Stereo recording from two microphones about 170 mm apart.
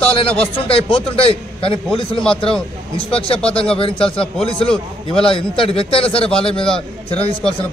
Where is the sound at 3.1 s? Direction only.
35° left (ahead or behind).